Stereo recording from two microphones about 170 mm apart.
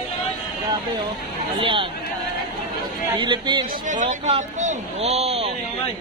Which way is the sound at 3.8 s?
45° right (ahead or behind).